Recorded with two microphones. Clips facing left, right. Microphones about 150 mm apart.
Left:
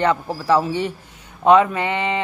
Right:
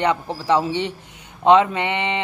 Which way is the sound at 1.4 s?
25° right (ahead or behind).